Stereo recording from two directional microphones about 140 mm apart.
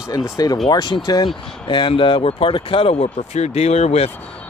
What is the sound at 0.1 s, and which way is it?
Speech, 25° left (ahead or behind).